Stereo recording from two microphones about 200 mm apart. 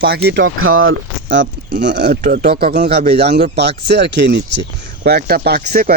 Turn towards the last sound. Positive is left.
turn(degrees=-50)  # may be behind; listen again after turning